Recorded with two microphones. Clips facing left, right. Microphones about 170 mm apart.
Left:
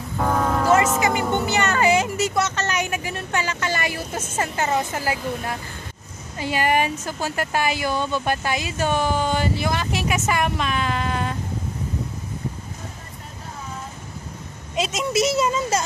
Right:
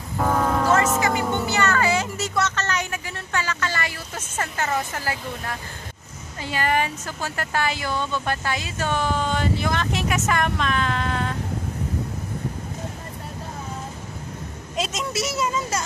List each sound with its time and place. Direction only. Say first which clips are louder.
0.2 s music: even; centre (ahead or behind)
0.7 s speech: left 1 dB; 10° left (ahead or behind)
6.4 s speech: left 3 dB; 15° left (ahead or behind)
15.1 s speech: left 6 dB; 20° left (ahead or behind)